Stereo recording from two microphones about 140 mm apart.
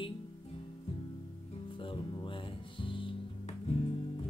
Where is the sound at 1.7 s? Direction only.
35° left (ahead or behind).